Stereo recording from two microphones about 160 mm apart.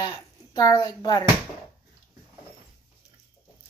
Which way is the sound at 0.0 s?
25° left (ahead or behind).